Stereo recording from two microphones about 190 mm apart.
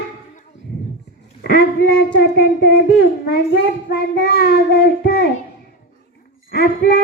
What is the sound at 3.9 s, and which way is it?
Child singing, 55° left (ahead or behind).